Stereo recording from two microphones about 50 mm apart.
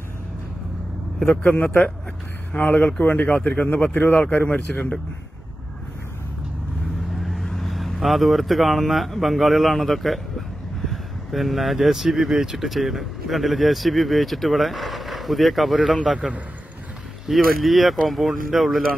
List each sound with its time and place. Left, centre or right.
1.3 s speech: left
2.5 s speech: left
7.4 s speech: centre
15.9 s speech: centre
17.3 s speech: centre